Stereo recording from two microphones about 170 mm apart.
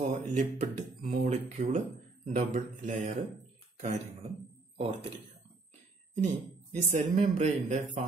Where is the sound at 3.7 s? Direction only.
40° right (ahead or behind).